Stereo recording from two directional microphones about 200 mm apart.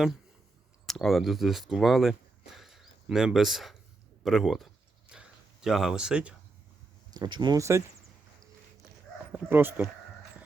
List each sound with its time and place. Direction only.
0.9 s speech: centre (ahead or behind)
5.1 s a sound: 5° right (ahead or behind)
5.6 s speech: centre (ahead or behind)
7.1 s speech: 20° right (ahead or behind)
9.3 s speech: 10° right (ahead or behind)